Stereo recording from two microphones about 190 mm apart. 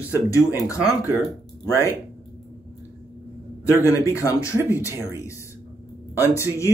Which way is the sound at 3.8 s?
15° left (ahead or behind).